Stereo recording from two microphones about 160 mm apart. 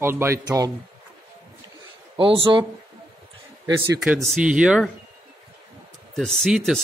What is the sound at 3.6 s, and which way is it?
Speech, 20° right (ahead or behind).